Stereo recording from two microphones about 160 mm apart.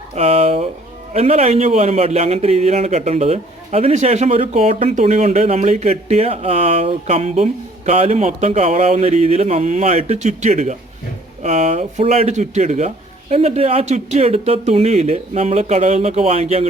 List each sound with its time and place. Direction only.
0.2 s a man's voice: 40° right (ahead or behind)